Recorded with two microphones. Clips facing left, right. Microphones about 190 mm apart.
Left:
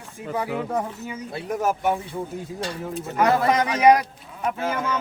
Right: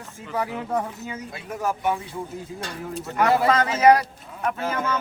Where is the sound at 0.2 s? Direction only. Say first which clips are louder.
Left 6 dB; 15° left (ahead or behind).